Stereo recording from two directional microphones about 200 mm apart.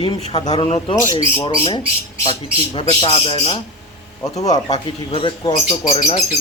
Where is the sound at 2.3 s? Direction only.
25° left (ahead or behind).